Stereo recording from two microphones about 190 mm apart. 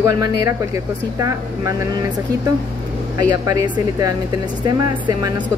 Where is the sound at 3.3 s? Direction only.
20° right (ahead or behind).